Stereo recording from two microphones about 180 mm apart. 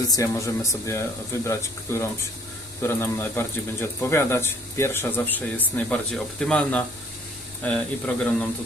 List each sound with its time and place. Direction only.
0.1 s speech: 15° left (ahead or behind)